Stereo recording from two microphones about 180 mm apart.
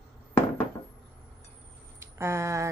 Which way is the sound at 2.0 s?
15° right (ahead or behind).